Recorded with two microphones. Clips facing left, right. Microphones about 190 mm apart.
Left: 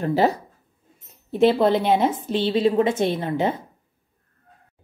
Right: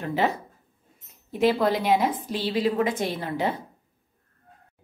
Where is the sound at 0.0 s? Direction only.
35° left (ahead or behind).